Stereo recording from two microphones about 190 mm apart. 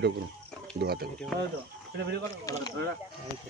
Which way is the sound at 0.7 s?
55° right (ahead or behind).